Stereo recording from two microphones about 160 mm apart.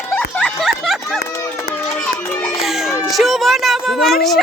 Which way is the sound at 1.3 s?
20° left (ahead or behind).